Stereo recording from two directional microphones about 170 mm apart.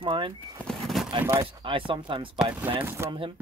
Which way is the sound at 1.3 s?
30° right (ahead or behind).